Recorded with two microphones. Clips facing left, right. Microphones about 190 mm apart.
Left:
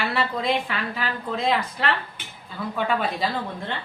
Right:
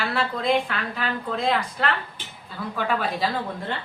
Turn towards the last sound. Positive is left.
turn(degrees=0)  # may be behind; listen again after turning